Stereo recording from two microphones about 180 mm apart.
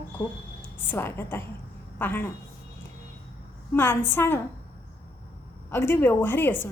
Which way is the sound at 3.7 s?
10° left (ahead or behind).